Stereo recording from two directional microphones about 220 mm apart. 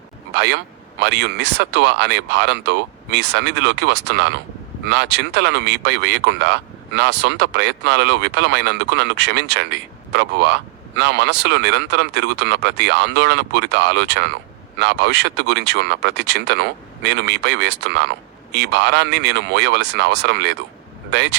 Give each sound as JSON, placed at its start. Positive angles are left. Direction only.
{"t": 0.3, "sound": "speech", "side_deg": -50}